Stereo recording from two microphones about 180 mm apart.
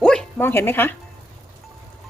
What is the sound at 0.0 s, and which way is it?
Bow-wow, 5° left (ahead or behind).